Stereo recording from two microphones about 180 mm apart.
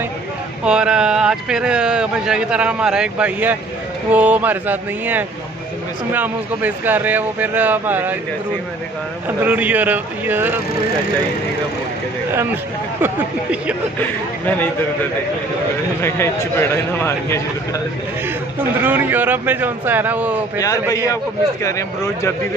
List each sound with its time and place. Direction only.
0.7 s speech: 5° right (ahead or behind)
9.4 s speech: 10° right (ahead or behind)
13.0 s speech: 5° right (ahead or behind)
16.0 s a man's voice: 15° left (ahead or behind)
18.8 s speech: 10° right (ahead or behind)
20.5 s a man's voice: 20° left (ahead or behind)